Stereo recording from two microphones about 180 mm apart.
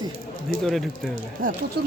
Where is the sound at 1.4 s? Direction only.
50° right (ahead or behind).